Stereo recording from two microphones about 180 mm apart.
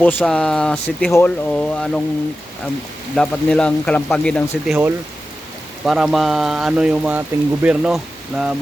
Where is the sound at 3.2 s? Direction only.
5° left (ahead or behind).